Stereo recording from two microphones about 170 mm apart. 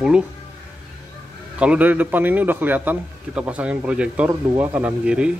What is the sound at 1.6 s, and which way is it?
A man's voice, 10° right (ahead or behind).